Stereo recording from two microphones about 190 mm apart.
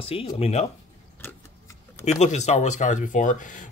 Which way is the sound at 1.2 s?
15° left (ahead or behind).